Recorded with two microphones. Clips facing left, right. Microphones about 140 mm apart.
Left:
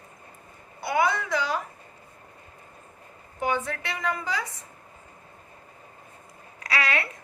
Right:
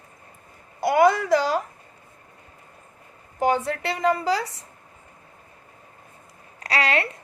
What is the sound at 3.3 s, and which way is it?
A woman's voice, 40° right (ahead or behind).